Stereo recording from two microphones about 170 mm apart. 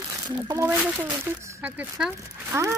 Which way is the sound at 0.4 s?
15° right (ahead or behind).